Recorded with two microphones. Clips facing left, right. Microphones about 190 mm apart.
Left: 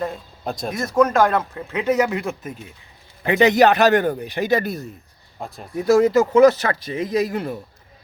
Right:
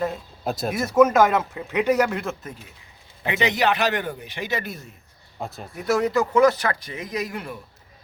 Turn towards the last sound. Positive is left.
turn(degrees=30)  # may be behind; listen again after turning